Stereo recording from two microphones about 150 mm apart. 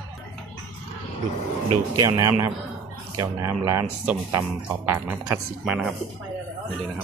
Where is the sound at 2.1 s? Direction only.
20° right (ahead or behind).